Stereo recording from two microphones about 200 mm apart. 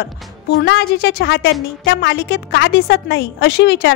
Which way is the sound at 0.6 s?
55° left (ahead or behind).